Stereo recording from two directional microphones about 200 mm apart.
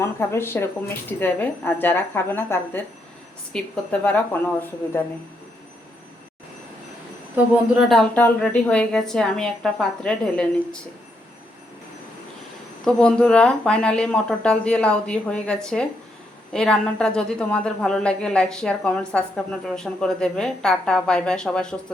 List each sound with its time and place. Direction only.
0.0 s a woman's voice: 15° left (ahead or behind)
7.5 s a woman's voice: centre (ahead or behind)
12.8 s a woman's voice: 5° left (ahead or behind)